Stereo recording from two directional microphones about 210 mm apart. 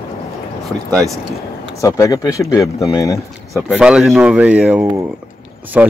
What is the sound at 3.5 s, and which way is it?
Speech, 5° right (ahead or behind).